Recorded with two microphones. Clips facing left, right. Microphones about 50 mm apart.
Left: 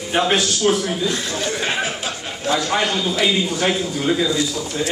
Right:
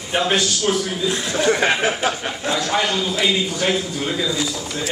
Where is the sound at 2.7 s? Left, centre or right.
Centre.